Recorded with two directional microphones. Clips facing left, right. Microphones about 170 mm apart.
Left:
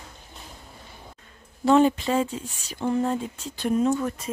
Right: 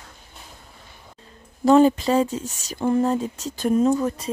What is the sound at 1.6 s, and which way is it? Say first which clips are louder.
Speech: right 4 dB; 40° right (ahead or behind).